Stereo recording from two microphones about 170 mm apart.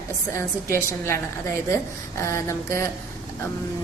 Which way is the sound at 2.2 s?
15° left (ahead or behind).